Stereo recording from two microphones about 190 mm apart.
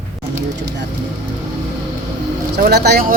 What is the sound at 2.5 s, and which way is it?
Speech, 55° right (ahead or behind).